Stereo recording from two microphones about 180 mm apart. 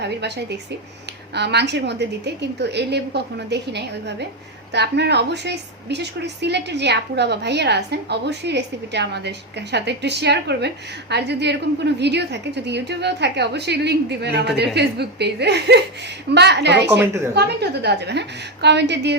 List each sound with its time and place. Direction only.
0.0 s a woman's voice: 70° right (ahead or behind)